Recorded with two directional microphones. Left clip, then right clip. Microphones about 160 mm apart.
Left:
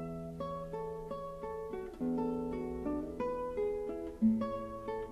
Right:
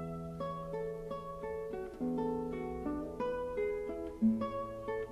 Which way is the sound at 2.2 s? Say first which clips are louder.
Right 1 dB; 50° right (ahead or behind).